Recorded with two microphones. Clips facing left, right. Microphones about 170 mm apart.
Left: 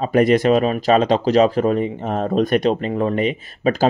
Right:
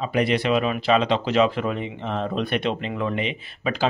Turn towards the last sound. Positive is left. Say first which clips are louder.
# left 7 dB
turn(degrees=45)  # may be behind; listen again after turning